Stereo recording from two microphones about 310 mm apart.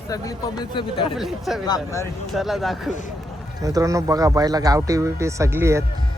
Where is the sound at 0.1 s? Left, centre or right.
Centre.